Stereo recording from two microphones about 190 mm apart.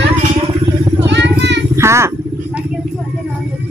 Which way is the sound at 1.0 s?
65° right (ahead or behind).